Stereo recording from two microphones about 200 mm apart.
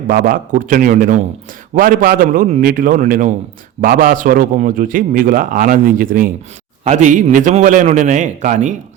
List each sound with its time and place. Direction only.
0.1 s a man's voice: 45° right (ahead or behind)